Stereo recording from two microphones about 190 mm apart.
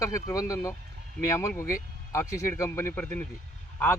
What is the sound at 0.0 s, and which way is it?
Speech, 15° left (ahead or behind).